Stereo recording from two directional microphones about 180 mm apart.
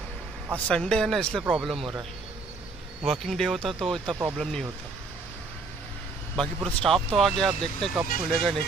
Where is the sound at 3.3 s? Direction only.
Centre (ahead or behind).